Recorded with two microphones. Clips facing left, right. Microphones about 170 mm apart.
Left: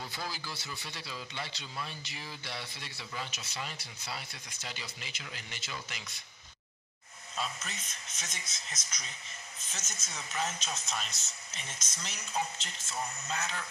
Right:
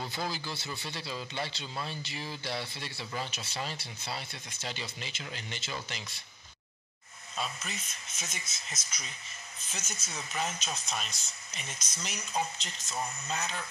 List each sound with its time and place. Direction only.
0.0 s a man's voice: 25° right (ahead or behind)
7.3 s speech: 10° right (ahead or behind)